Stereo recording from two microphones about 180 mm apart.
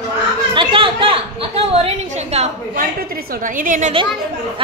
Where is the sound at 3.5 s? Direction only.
50° right (ahead or behind).